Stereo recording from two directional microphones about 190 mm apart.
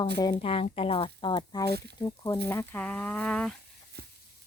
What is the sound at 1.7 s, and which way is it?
Speech, 60° right (ahead or behind).